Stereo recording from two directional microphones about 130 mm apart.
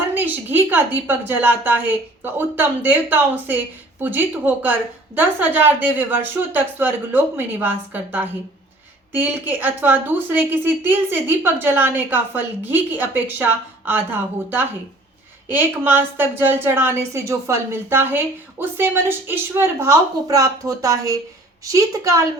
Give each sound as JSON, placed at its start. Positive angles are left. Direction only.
{"t": 0.1, "sound": "a woman's voice", "side_deg": -15}